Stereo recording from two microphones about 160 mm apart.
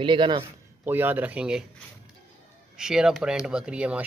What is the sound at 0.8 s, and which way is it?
Speech, 10° right (ahead or behind).